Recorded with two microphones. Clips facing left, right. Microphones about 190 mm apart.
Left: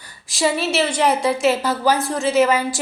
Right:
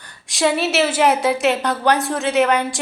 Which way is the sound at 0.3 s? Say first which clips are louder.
Right 2 dB; centre (ahead or behind).